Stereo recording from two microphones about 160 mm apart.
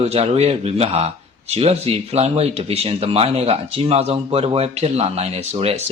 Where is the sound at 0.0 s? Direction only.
40° right (ahead or behind).